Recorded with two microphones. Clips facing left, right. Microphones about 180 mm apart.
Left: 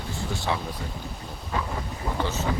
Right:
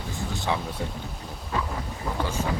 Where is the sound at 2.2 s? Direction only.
10° right (ahead or behind).